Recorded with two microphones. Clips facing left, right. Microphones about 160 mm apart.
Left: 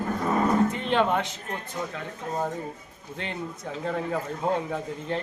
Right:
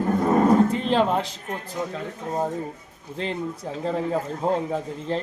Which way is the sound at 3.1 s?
30° right (ahead or behind).